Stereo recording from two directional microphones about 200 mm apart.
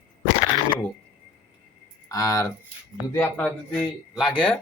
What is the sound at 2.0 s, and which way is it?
Speech, 15° left (ahead or behind).